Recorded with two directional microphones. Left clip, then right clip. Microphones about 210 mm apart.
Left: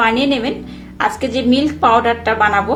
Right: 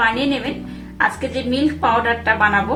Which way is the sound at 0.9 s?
40° left (ahead or behind).